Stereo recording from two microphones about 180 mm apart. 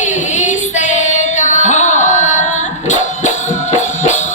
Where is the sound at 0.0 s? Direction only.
40° left (ahead or behind).